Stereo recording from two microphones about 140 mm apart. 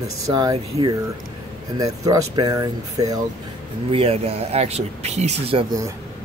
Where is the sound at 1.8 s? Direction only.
25° right (ahead or behind).